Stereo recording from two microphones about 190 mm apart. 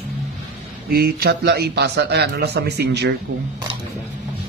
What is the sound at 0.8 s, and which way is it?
A man's voice, 50° right (ahead or behind).